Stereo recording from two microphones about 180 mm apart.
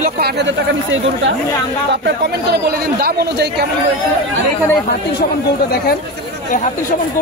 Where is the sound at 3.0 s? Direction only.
60° right (ahead or behind).